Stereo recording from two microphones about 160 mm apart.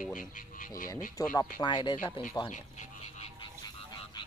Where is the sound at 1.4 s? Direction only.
25° left (ahead or behind).